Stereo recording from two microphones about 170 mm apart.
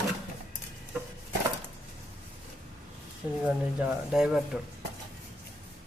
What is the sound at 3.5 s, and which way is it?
Speech, 5° right (ahead or behind).